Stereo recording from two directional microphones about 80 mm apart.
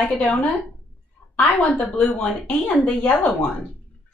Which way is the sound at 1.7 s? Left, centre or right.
Centre.